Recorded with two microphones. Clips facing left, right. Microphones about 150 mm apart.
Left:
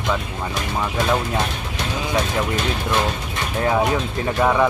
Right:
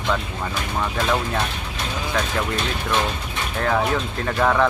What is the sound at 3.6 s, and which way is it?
Speech, 15° left (ahead or behind).